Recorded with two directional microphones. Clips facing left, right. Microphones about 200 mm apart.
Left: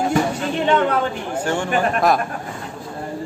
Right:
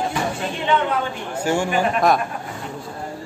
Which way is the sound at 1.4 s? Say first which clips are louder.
Right 3 dB; 10° right (ahead or behind).